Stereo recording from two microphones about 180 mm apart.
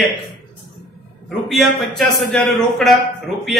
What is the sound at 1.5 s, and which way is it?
Speech, centre (ahead or behind).